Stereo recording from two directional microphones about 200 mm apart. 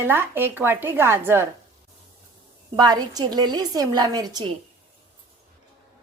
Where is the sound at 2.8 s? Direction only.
20° right (ahead or behind).